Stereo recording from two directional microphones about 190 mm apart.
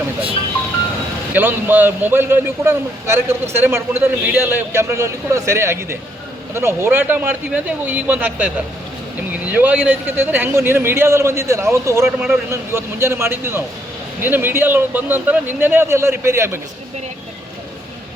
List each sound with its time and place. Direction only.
1.3 s speech: 10° right (ahead or behind)